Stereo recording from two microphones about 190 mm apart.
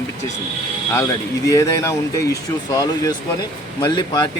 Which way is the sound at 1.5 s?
15° left (ahead or behind).